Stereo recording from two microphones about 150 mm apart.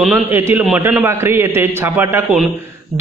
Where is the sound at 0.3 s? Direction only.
15° right (ahead or behind).